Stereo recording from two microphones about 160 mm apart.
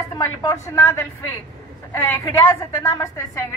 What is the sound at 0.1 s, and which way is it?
A woman's voice, 20° left (ahead or behind).